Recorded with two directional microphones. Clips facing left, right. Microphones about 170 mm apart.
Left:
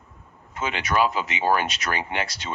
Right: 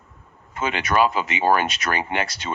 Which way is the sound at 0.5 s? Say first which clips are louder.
Right 3 dB; 55° right (ahead or behind).